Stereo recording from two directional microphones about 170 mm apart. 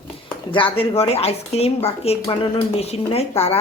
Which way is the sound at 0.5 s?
30° left (ahead or behind).